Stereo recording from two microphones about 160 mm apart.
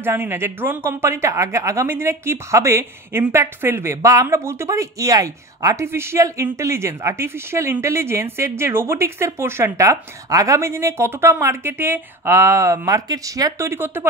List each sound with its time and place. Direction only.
0.0 s speech: 15° right (ahead or behind)